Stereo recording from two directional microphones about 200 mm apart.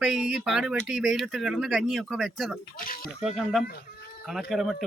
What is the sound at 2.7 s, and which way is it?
Speech, 45° left (ahead or behind).